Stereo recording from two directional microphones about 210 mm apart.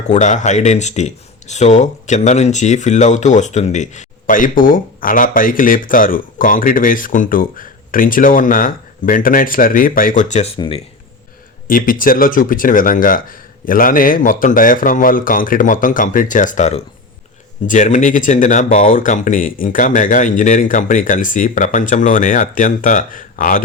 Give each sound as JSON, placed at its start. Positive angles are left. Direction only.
{"t": 0.1, "sound": "speech", "side_deg": 35}
{"t": 11.7, "sound": "speech", "side_deg": 40}